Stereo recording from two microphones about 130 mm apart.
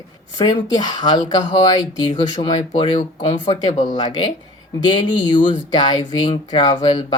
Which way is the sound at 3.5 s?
60° left (ahead or behind).